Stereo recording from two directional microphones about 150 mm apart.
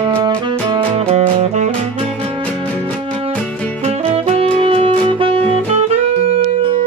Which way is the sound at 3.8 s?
45° right (ahead or behind).